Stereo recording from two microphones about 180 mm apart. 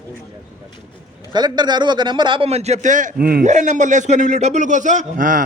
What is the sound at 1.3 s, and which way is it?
A man's voice, 25° right (ahead or behind).